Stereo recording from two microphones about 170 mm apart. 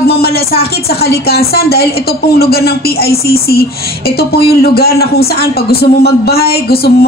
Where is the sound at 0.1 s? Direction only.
65° left (ahead or behind).